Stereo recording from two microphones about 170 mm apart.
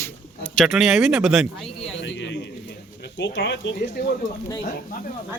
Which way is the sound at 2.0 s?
90° left.